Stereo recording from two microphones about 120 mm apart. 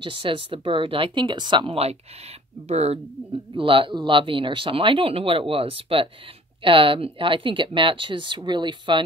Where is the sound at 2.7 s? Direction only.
65° right (ahead or behind).